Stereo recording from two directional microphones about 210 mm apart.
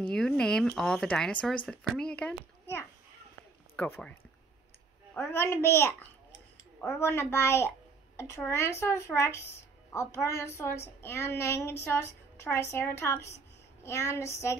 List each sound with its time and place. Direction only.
0.0 s a child's voice: 5° left (ahead or behind)
5.1 s speech: 10° left (ahead or behind)